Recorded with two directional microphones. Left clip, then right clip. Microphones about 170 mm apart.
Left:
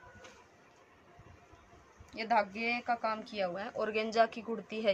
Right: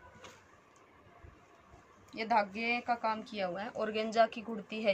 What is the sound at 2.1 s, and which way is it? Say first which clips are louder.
Speech: even; 10° left (ahead or behind).